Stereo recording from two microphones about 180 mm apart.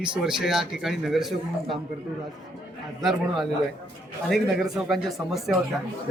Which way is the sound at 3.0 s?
Centre (ahead or behind).